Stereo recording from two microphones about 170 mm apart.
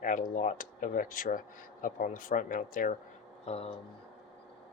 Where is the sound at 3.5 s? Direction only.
40° left (ahead or behind).